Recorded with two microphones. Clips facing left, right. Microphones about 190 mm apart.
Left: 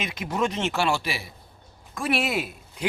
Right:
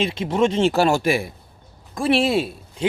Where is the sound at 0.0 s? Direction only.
30° right (ahead or behind); by 1.3 s 50° right (ahead or behind).